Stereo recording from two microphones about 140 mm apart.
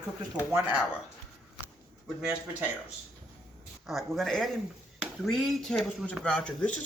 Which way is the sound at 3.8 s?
Centre (ahead or behind).